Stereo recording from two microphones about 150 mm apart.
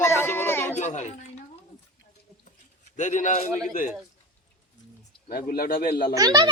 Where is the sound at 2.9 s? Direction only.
55° left (ahead or behind).